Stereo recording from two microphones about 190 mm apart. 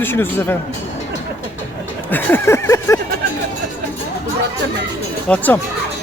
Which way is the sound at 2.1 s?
10° left (ahead or behind).